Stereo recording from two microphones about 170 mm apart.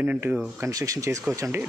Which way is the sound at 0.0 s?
10° right (ahead or behind).